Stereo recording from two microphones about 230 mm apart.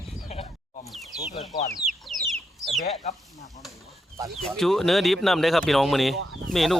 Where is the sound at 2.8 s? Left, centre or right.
Left.